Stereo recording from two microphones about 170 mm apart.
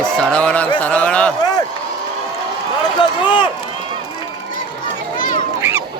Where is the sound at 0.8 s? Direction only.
5° left (ahead or behind).